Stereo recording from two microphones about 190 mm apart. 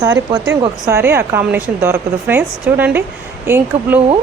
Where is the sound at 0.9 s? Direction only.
15° right (ahead or behind).